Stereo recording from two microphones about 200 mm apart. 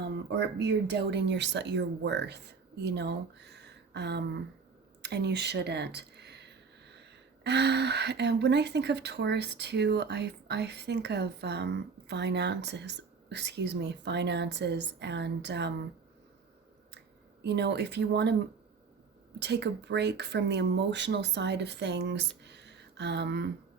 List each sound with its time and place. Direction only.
0.0 s speech: 60° right (ahead or behind)
17.4 s speech: 60° right (ahead or behind)
19.4 s speech: 60° right (ahead or behind)